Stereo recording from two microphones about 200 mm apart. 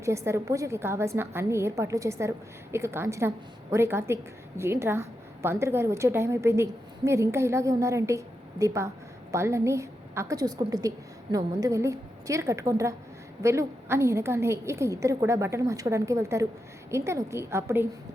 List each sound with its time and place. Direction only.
0.0 s a woman's voice: 15° right (ahead or behind)